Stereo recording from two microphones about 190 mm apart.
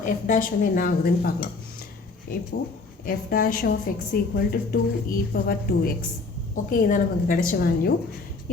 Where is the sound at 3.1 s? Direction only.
50° left (ahead or behind).